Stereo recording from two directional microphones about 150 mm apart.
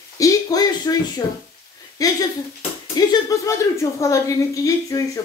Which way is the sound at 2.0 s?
25° left (ahead or behind).